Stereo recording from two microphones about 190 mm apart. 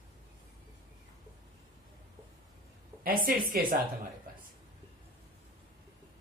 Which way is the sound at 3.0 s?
50° right (ahead or behind).